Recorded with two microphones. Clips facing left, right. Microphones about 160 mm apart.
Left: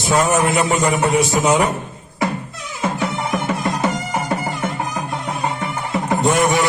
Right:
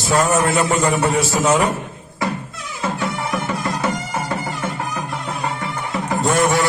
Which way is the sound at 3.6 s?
20° left (ahead or behind).